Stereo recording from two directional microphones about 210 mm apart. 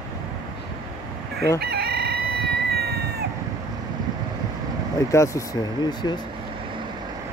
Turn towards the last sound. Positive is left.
turn(degrees=20)  # may be behind; listen again after turning